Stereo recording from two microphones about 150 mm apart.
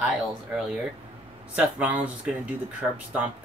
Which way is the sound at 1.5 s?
10° right (ahead or behind).